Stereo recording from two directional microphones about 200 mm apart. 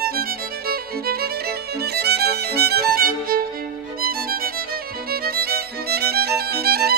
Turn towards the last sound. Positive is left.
turn(degrees=-50)  # may be behind; listen again after turning